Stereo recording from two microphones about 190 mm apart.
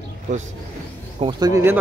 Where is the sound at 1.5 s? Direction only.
10° right (ahead or behind).